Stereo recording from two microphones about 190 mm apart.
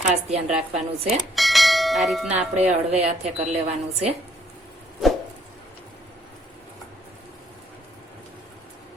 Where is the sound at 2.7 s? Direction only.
35° right (ahead or behind).